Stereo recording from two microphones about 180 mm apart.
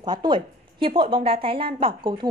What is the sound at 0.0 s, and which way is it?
A woman's voice, 25° right (ahead or behind).